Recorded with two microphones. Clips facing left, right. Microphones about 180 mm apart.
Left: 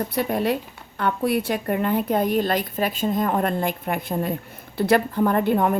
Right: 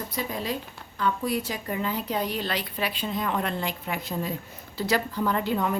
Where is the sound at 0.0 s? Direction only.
60° left (ahead or behind).